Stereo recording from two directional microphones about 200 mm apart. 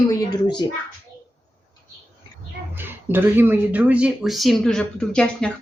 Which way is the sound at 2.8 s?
10° right (ahead or behind).